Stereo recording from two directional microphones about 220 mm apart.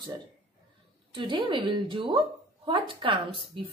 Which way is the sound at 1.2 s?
20° right (ahead or behind).